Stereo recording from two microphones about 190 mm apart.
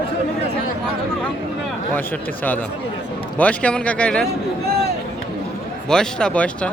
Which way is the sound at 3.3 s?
5° left (ahead or behind).